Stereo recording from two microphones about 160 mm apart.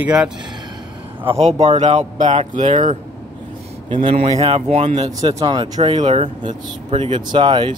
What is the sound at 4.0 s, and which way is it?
Speech, 45° right (ahead or behind).